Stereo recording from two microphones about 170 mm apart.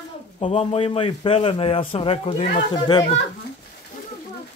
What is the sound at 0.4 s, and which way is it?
A man's voice, 35° left (ahead or behind).